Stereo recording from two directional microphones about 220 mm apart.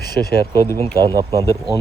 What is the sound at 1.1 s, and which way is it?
Speech, 15° right (ahead or behind).